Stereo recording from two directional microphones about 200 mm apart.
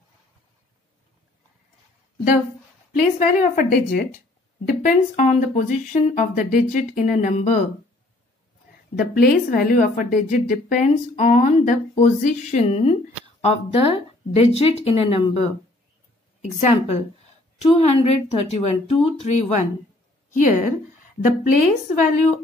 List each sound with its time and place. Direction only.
3.2 s a woman's voice: 45° left (ahead or behind)
8.9 s a woman's voice: 45° left (ahead or behind)